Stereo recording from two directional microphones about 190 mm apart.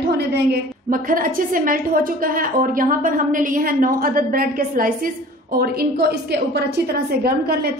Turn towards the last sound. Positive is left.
turn(degrees=-55)  # may be behind; listen again after turning